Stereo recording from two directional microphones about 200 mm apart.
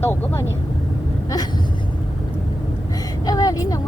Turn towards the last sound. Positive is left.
turn(degrees=15)  # may be behind; listen again after turning